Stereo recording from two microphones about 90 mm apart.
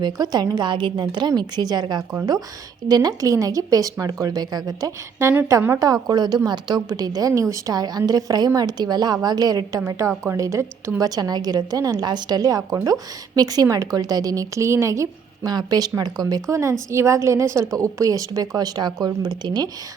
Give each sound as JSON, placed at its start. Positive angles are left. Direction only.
{"t": 0.0, "sound": "a woman's voice", "side_deg": -50}
{"t": 5.8, "sound": "a woman's voice", "side_deg": -45}
{"t": 11.1, "sound": "a woman's voice", "side_deg": -50}
{"t": 15.5, "sound": "a woman's voice", "side_deg": -45}